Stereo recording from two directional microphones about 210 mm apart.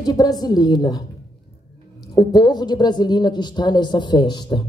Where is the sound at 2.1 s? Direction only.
20° left (ahead or behind).